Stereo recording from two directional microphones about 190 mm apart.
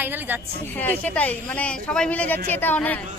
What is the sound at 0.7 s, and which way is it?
Speech, 10° left (ahead or behind).